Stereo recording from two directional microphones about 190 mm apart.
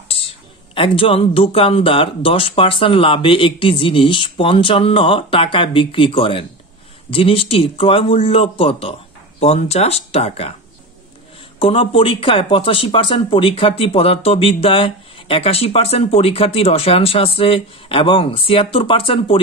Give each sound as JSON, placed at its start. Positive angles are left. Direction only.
{"t": 0.1, "sound": "speech", "side_deg": 30}
{"t": 11.6, "sound": "speech", "side_deg": 30}